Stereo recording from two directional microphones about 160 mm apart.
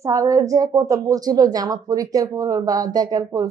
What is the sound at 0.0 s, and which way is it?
Speech, 20° right (ahead or behind).